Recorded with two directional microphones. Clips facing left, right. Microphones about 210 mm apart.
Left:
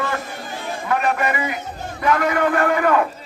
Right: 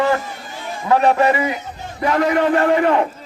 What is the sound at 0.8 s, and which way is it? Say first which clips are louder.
A man's voice: right 7 dB; 30° right (ahead or behind).